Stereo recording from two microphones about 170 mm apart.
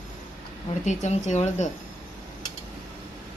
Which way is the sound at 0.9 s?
45° left (ahead or behind).